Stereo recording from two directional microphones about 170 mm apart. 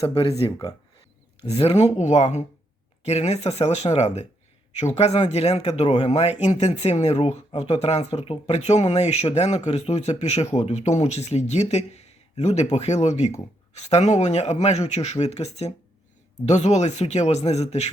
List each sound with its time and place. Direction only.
0.0 s speech: 35° left (ahead or behind)